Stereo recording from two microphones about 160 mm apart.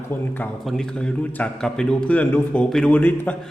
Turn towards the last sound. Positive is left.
turn(degrees=10)  # may be behind; listen again after turning